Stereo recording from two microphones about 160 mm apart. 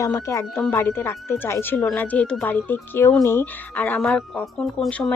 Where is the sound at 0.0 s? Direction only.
20° left (ahead or behind).